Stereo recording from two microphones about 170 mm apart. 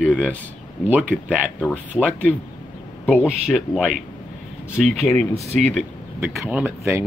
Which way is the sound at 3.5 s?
Centre (ahead or behind).